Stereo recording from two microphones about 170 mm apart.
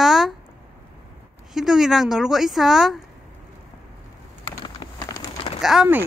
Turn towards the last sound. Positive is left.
turn(degrees=-5)  # may be behind; listen again after turning